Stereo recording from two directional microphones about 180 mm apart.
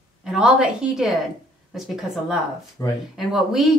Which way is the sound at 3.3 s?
Centre (ahead or behind).